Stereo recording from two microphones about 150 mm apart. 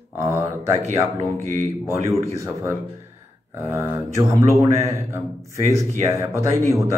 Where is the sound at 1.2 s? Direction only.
20° left (ahead or behind).